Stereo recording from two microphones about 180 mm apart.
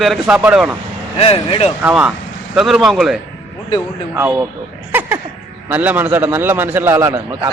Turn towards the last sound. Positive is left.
turn(degrees=-20)  # may be behind; listen again after turning